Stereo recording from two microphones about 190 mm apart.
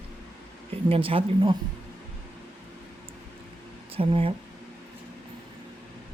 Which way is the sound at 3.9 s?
30° right (ahead or behind).